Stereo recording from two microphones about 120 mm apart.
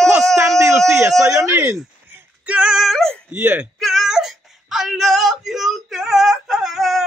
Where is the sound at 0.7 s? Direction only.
20° right (ahead or behind).